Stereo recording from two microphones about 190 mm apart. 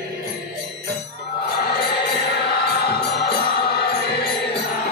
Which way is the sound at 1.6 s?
60° left (ahead or behind).